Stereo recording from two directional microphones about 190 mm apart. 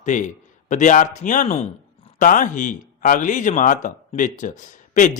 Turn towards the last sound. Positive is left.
turn(degrees=40)  # may be behind; listen again after turning